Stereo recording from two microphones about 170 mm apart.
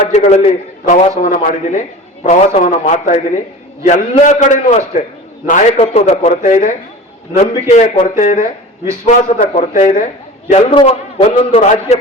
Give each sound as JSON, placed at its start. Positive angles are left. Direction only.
{"t": 0.1, "sound": "a man's voice", "side_deg": 40}
{"t": 7.4, "sound": "a man's voice", "side_deg": 30}
{"t": 8.0, "sound": "a man's voice", "side_deg": 50}
{"t": 10.7, "sound": "a man's voice", "side_deg": 30}